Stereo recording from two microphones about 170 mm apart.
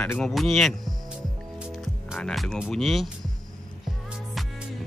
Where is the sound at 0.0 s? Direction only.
5° left (ahead or behind).